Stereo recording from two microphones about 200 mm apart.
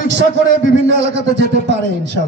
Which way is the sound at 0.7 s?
60° right (ahead or behind).